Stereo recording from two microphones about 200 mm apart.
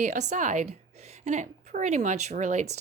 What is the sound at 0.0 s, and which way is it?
A woman's voice, 35° right (ahead or behind).